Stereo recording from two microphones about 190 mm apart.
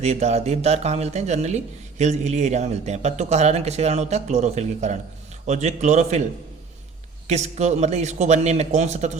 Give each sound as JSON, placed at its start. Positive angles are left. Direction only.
{"t": 0.0, "sound": "speech", "side_deg": -35}
{"t": 7.3, "sound": "speech", "side_deg": -35}